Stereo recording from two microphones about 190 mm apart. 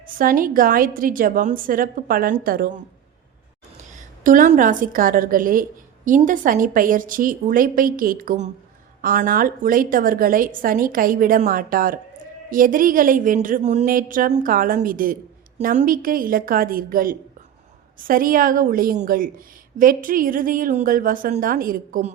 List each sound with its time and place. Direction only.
0.2 s a woman's voice: 45° right (ahead or behind)